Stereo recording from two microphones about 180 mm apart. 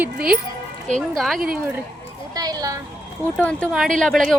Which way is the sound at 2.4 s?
20° right (ahead or behind).